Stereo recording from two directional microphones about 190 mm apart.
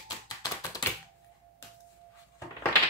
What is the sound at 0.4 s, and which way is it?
Tap, 20° left (ahead or behind).